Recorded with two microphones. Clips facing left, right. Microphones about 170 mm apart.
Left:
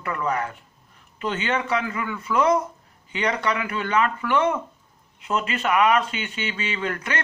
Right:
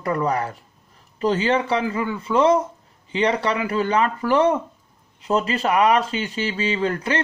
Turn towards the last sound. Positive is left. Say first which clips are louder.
# right 5 dB
turn(degrees=-30)  # may be behind; listen again after turning